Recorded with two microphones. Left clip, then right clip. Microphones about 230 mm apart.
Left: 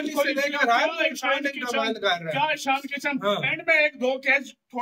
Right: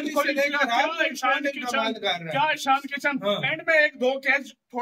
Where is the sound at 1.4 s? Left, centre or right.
Centre.